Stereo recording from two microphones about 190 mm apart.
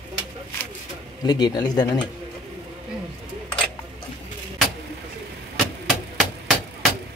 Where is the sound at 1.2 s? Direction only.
20° left (ahead or behind).